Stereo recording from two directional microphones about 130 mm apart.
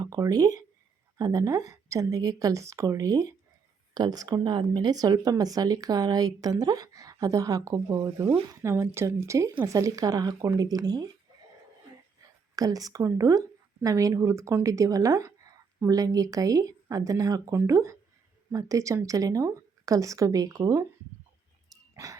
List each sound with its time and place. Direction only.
0.0 s speech: 30° right (ahead or behind)
12.5 s speech: 30° right (ahead or behind)
21.7 s dog: 25° right (ahead or behind)